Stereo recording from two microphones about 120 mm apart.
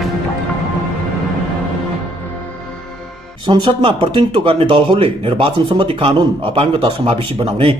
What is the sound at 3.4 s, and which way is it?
Speech, 40° right (ahead or behind).